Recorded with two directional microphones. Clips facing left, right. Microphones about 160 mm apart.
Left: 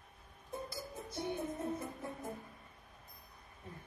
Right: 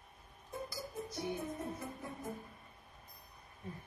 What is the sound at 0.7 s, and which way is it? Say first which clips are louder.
Music: right 1 dB; 25° left (ahead or behind).